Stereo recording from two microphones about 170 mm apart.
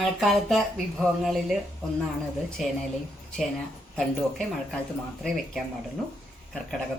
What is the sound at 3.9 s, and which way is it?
Speech, 5° left (ahead or behind).